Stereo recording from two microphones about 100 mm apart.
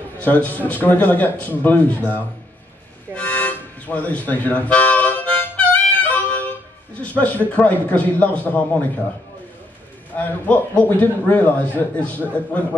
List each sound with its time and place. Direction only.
0.2 s a man's voice: 15° left (ahead or behind)
3.2 s harmonica: 15° left (ahead or behind)
7.0 s a man's voice: 15° left (ahead or behind)
10.1 s a man's voice: 15° left (ahead or behind)